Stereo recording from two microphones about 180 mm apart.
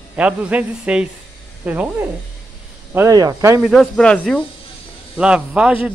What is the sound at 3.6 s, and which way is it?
A man's voice, centre (ahead or behind).